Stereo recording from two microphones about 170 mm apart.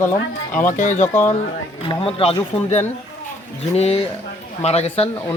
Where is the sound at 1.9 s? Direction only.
30° left (ahead or behind).